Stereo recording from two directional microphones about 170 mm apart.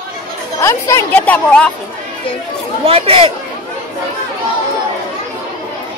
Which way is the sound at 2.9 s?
35° right (ahead or behind).